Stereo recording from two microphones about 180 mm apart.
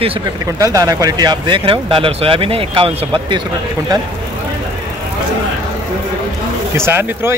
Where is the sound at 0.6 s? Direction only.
20° right (ahead or behind).